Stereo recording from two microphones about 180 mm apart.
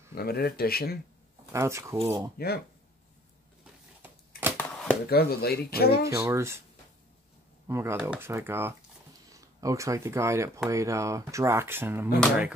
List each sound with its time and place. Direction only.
0.1 s speech: 60° left (ahead or behind)
1.5 s speech: 15° right (ahead or behind)
2.0 s speech: 30° right (ahead or behind)
2.3 s speech: 60° left (ahead or behind)
4.6 s a sound: 10° left (ahead or behind)
5.1 s speech: 60° left (ahead or behind)
6.0 s speech: 15° right (ahead or behind)
7.6 s speech: 15° right (ahead or behind)